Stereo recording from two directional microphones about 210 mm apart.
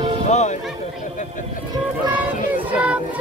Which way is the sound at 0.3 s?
35° left (ahead or behind).